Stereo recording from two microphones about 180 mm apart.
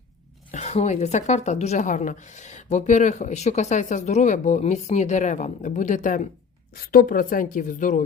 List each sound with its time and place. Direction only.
0.5 s a woman's voice: 40° left (ahead or behind)